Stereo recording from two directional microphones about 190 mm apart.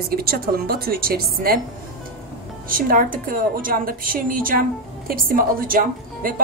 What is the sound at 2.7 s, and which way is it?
A woman's voice, 45° right (ahead or behind).